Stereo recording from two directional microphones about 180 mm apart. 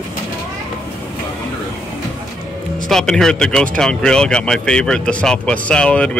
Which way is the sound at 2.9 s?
Centre (ahead or behind).